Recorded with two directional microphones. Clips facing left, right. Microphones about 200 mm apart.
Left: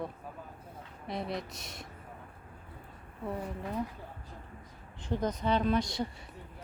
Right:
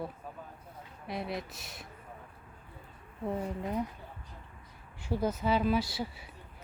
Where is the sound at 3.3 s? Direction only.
20° right (ahead or behind).